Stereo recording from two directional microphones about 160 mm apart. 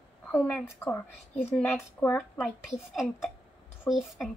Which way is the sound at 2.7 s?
5° right (ahead or behind).